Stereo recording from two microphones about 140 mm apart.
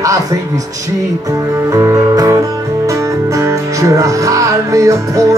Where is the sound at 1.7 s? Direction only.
25° right (ahead or behind).